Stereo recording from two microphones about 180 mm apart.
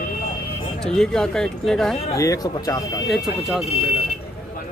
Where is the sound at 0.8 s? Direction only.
5° left (ahead or behind).